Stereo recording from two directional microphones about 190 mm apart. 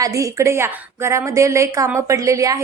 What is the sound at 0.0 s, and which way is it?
A woman's voice, 15° right (ahead or behind).